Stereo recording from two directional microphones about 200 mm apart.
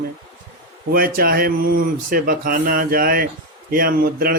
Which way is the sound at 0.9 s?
50° right (ahead or behind).